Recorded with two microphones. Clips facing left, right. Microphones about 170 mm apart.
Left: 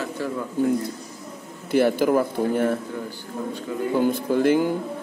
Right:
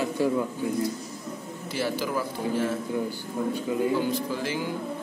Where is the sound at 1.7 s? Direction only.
55° left (ahead or behind).